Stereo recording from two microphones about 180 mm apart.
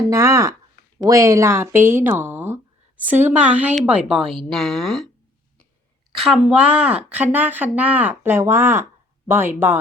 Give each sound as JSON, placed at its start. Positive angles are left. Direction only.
{"t": 0.1, "sound": "a woman's voice", "side_deg": -15}
{"t": 6.1, "sound": "a woman's voice", "side_deg": 0}